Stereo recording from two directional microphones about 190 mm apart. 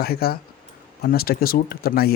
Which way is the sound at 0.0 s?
55° left (ahead or behind).